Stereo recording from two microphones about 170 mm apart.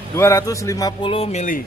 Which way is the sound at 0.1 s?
15° left (ahead or behind).